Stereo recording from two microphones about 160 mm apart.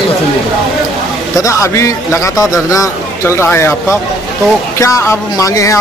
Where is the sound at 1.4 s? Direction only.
20° left (ahead or behind).